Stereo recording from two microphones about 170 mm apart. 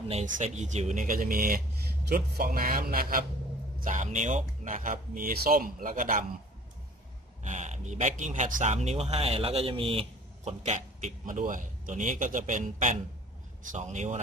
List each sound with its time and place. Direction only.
0.1 s a man's voice: 45° right (ahead or behind); by 3.3 s 60° right (ahead or behind)
3.8 s speech: 45° right (ahead or behind)
7.4 s speech: 45° right (ahead or behind)